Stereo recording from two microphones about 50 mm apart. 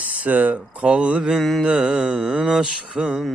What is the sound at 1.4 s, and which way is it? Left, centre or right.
Speech, centre.